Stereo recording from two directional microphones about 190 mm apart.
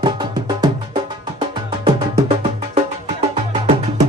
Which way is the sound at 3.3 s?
30° right (ahead or behind).